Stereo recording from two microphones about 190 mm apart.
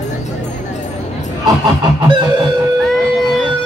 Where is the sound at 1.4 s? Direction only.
20° right (ahead or behind).